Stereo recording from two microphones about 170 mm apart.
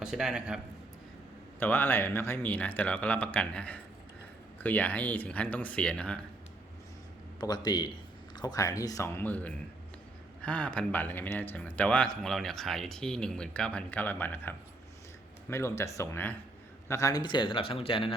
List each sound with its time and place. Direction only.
0.0 s speech: 5° right (ahead or behind)
1.5 s speech: 10° left (ahead or behind)
7.3 s speech: 25° left (ahead or behind)